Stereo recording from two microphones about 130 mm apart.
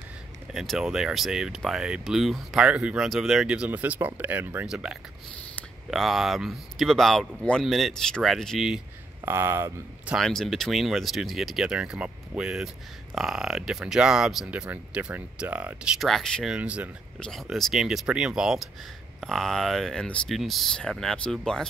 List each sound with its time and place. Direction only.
0.5 s speech: centre (ahead or behind)
9.2 s speech: 20° right (ahead or behind)
10.1 s speech: 5° left (ahead or behind)
16.5 s speech: 10° right (ahead or behind)
17.2 s speech: centre (ahead or behind)